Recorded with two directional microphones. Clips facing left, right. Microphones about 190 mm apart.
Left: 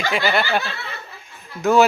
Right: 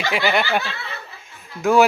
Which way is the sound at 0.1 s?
15° right (ahead or behind).